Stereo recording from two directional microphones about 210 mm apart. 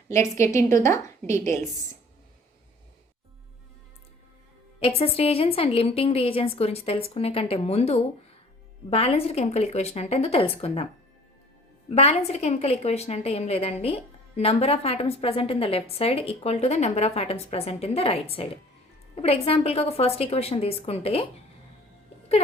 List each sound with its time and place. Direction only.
0.1 s a woman's voice: 15° left (ahead or behind)
4.8 s a woman's voice: 25° left (ahead or behind)
11.9 s a woman's voice: 30° left (ahead or behind)